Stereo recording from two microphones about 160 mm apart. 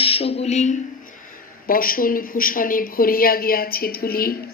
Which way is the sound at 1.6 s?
65° left (ahead or behind).